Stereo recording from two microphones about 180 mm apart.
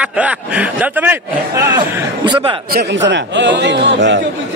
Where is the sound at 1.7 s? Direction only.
25° right (ahead or behind).